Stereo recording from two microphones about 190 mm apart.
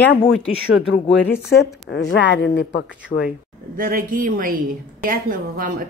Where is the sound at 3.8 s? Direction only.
45° right (ahead or behind).